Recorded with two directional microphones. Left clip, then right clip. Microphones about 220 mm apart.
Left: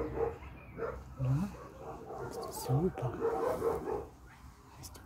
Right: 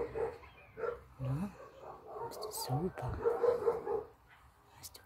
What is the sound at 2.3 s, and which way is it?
Speech, 25° right (ahead or behind).